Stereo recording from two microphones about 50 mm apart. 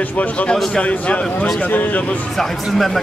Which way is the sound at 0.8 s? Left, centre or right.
Left.